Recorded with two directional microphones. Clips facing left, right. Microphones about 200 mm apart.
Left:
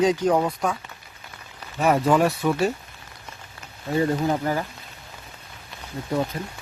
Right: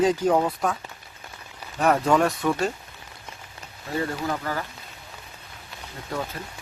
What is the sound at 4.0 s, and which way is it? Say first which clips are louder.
Speech: left 5 dB; 20° left (ahead or behind).